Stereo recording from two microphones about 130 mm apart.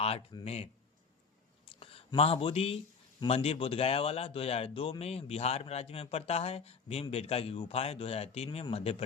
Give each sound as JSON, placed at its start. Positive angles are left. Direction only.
{"t": 0.0, "sound": "speech", "side_deg": 50}
{"t": 1.6, "sound": "a sound", "side_deg": 45}
{"t": 2.1, "sound": "speech", "side_deg": 45}